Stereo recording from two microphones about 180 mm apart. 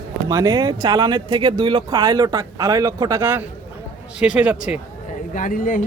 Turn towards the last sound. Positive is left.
turn(degrees=50)  # may be behind; listen again after turning